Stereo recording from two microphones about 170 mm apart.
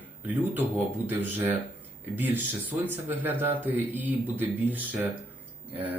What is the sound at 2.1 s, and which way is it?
Speech, 10° right (ahead or behind).